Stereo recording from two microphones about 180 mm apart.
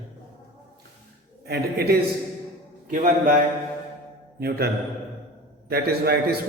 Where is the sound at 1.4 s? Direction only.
65° right (ahead or behind).